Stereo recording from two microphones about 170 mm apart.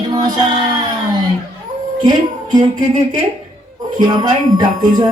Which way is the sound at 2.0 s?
25° right (ahead or behind).